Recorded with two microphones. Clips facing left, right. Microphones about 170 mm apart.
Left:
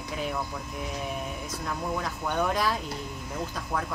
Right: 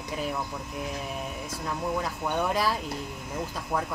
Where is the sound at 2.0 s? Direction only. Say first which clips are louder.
Even; 5° right (ahead or behind).